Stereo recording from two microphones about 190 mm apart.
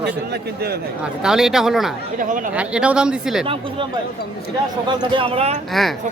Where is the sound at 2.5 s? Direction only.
5° right (ahead or behind).